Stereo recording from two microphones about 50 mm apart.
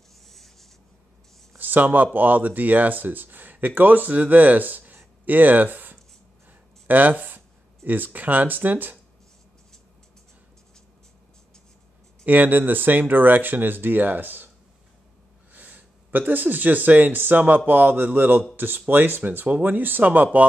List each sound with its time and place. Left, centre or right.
0.3 s a sound: centre
1.6 s speech: right
12.3 s speech: right
15.5 s speech: right